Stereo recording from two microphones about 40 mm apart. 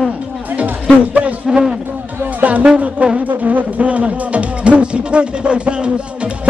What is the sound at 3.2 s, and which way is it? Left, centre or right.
Speech, right.